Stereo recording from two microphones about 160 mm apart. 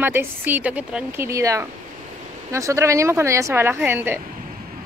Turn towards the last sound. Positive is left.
turn(degrees=-10)  # may be behind; listen again after turning